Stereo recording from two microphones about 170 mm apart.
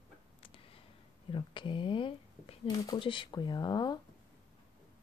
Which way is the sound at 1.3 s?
30° left (ahead or behind).